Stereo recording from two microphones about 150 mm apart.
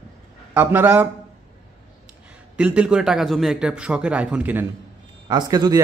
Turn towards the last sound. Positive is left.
turn(degrees=-25)  # may be behind; listen again after turning